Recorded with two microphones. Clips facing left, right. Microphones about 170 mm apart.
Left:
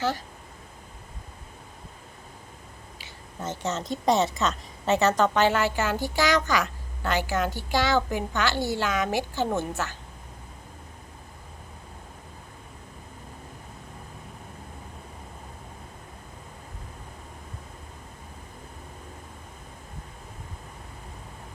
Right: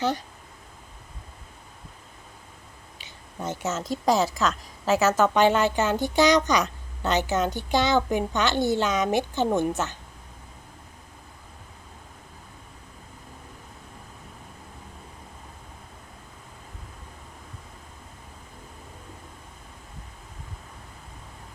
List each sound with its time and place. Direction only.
3.0 s a woman's voice: 10° right (ahead or behind)